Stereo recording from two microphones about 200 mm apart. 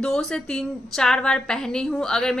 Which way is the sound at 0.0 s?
5° left (ahead or behind).